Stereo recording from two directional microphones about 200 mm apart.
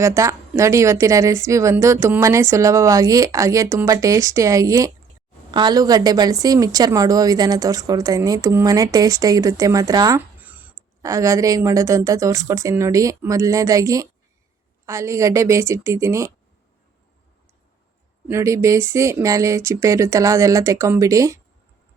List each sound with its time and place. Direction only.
0.0 s a woman's voice: 15° right (ahead or behind)
18.3 s a woman's voice: 15° right (ahead or behind)